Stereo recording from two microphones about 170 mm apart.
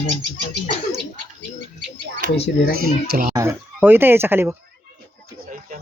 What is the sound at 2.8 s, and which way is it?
Speech, 60° right (ahead or behind).